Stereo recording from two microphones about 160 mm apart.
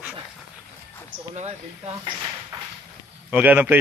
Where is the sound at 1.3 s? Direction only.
40° right (ahead or behind).